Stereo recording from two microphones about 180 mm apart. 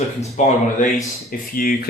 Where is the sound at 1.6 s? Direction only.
55° left (ahead or behind).